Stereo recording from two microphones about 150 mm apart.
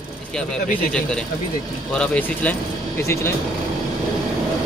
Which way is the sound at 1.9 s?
10° left (ahead or behind).